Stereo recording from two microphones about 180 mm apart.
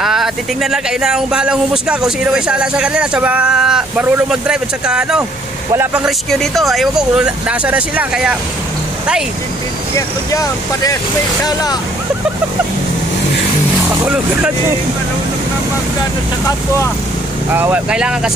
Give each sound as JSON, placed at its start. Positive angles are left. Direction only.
{"t": 0.0, "sound": "speech", "side_deg": 0}
{"t": 6.0, "sound": "speech", "side_deg": 0}
{"t": 9.9, "sound": "speech", "side_deg": 15}
{"t": 13.8, "sound": "speech", "side_deg": -10}
{"t": 17.5, "sound": "speech", "side_deg": -10}